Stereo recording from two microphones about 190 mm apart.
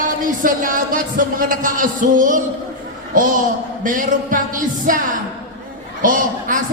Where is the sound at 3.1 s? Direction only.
45° right (ahead or behind).